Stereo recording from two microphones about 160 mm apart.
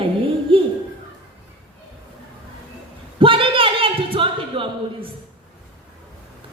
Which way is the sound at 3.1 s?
35° right (ahead or behind).